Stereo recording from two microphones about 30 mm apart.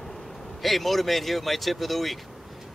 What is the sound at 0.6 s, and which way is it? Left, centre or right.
Speech, centre.